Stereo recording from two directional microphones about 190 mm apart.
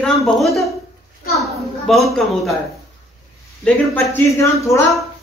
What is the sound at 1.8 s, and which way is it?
Speech, centre (ahead or behind).